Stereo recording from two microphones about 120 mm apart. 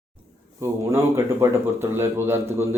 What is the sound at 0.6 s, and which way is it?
A man's voice, 25° right (ahead or behind).